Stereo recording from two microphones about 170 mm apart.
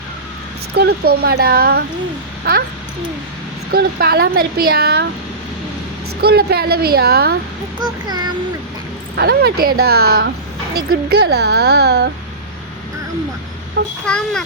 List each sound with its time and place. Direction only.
0.8 s speech: 70° right (ahead or behind)
3.7 s speech: 65° right (ahead or behind)
6.2 s speech: 65° right (ahead or behind)
7.8 s a child's voice: 25° right (ahead or behind)
9.1 s speech: 65° right (ahead or behind)
13.8 s a child's voice: 90° right
14.1 s a child's voice: 5° left (ahead or behind)